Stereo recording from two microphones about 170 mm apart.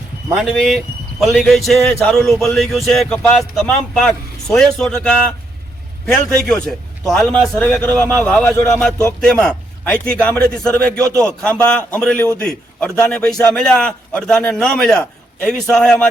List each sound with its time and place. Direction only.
0.3 s a man's voice: centre (ahead or behind)